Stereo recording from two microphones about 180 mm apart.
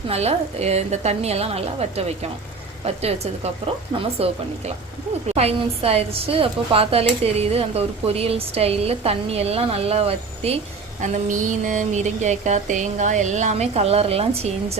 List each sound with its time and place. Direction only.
0.1 s speech: 35° right (ahead or behind)
11.0 s speech: 45° right (ahead or behind)